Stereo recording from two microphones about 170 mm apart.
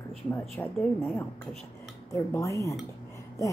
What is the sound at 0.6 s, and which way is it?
Speech, 15° left (ahead or behind).